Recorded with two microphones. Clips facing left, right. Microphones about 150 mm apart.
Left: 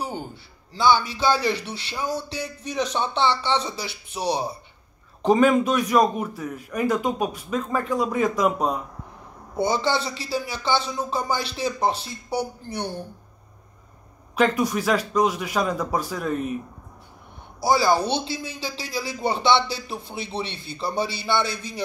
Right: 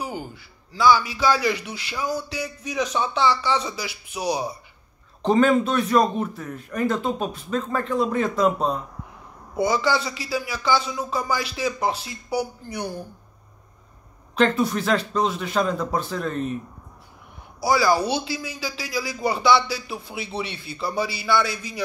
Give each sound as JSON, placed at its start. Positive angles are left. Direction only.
{"t": 0.3, "sound": "a man's voice", "side_deg": 25}
{"t": 5.2, "sound": "a man's voice", "side_deg": 10}
{"t": 9.6, "sound": "speech", "side_deg": 25}
{"t": 14.3, "sound": "a man's voice", "side_deg": 10}
{"t": 17.6, "sound": "speech", "side_deg": 25}
{"t": 20.4, "sound": "a man's voice", "side_deg": -5}
{"t": 20.7, "sound": "speech", "side_deg": 25}